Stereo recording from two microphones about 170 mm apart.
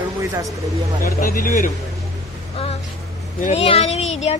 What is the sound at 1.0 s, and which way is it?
Speech, 55° left (ahead or behind).